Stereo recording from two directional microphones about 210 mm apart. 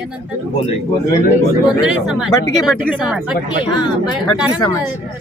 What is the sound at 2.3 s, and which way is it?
Speech, 15° left (ahead or behind).